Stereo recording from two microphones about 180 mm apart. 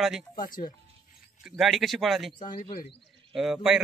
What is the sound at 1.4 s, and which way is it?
Speech, centre (ahead or behind).